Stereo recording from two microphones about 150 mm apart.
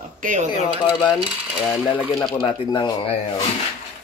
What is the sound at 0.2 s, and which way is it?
Speech, 60° right (ahead or behind).